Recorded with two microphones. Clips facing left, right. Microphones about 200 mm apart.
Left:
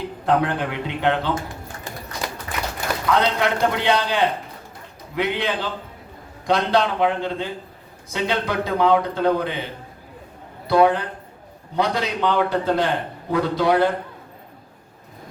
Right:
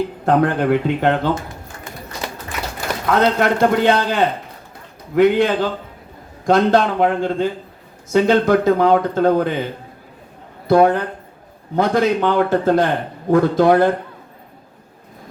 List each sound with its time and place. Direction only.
0.3 s a man's voice: 45° right (ahead or behind)
3.1 s a man's voice: 45° right (ahead or behind)
10.7 s a man's voice: 45° right (ahead or behind)